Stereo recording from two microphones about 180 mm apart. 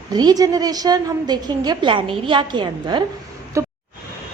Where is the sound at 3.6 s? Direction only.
15° right (ahead or behind).